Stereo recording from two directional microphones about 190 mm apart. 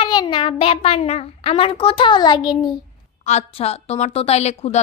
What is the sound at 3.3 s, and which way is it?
Speech, 35° left (ahead or behind).